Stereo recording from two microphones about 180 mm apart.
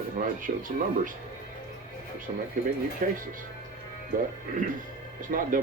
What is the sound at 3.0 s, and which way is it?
Speech, 50° right (ahead or behind).